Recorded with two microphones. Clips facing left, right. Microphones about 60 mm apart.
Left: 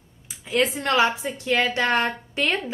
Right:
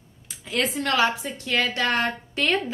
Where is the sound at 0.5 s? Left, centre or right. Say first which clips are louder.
Left 2 dB; centre.